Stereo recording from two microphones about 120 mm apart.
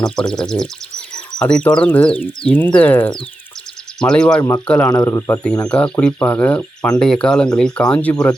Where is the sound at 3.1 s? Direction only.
45° left (ahead or behind).